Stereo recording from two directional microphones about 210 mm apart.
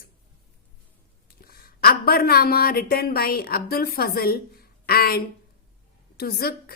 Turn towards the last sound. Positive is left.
turn(degrees=45)  # may be behind; listen again after turning